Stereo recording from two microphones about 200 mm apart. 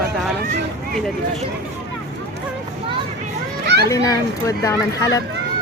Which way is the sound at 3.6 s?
55° right (ahead or behind).